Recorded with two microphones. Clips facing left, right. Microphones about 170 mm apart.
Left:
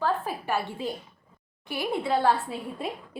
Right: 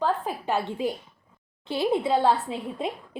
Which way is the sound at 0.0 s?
20° right (ahead or behind).